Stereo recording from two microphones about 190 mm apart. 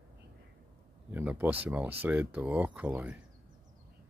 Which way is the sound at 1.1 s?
10° right (ahead or behind).